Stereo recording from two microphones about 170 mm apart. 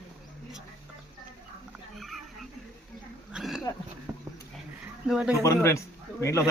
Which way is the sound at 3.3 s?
5° right (ahead or behind).